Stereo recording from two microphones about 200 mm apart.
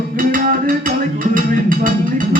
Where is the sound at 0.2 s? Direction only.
45° right (ahead or behind).